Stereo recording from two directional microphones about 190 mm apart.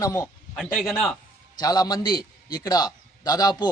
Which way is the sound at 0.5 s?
Centre (ahead or behind).